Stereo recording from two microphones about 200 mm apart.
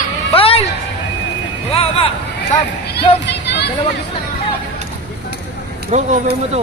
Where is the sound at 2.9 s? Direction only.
60° left (ahead or behind).